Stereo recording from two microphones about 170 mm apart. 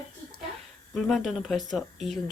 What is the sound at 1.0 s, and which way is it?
Speech, centre (ahead or behind).